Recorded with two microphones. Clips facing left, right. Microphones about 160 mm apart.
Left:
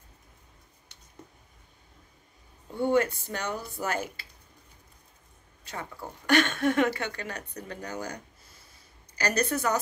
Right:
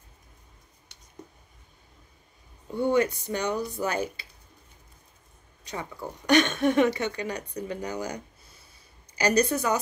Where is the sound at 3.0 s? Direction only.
15° right (ahead or behind).